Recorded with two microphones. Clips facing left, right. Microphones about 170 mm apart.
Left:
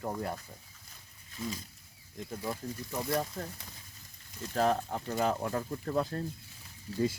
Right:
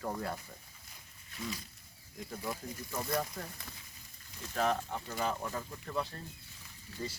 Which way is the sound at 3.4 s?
25° left (ahead or behind).